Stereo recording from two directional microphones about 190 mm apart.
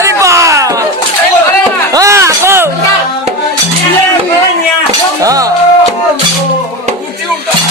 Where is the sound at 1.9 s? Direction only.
15° right (ahead or behind).